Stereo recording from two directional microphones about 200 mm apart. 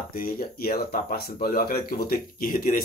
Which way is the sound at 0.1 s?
45° left (ahead or behind).